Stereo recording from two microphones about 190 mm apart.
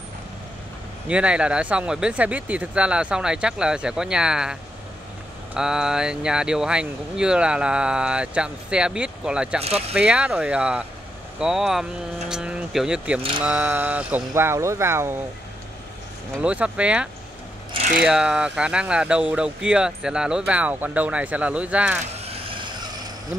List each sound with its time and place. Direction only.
1.0 s speech: 5° right (ahead or behind)
9.6 s speech: 30° right (ahead or behind)
9.9 s speech: 5° right (ahead or behind)
16.4 s speech: 5° right (ahead or behind)
22.2 s vehicle: 30° right (ahead or behind)